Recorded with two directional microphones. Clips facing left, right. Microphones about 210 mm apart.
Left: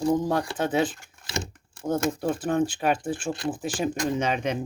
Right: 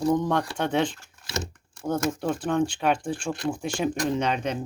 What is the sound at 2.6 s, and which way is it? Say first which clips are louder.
Speech: even; 5° left (ahead or behind).